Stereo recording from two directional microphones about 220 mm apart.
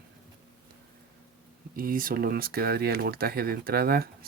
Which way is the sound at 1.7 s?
40° right (ahead or behind).